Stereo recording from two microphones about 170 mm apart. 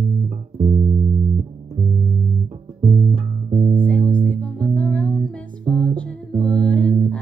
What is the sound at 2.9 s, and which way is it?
Bass guitar, 45° right (ahead or behind).